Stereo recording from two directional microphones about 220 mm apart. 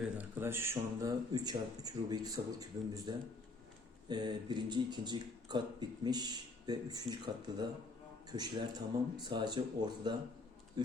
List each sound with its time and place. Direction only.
0.2 s speech: 10° right (ahead or behind)